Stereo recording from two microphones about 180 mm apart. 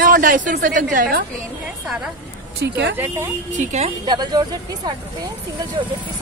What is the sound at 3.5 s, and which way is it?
Speech, 40° right (ahead or behind).